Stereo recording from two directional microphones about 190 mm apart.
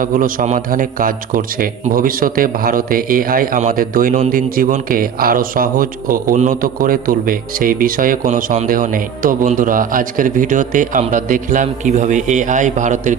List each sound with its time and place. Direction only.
0.0 s a man's voice: 45° right (ahead or behind)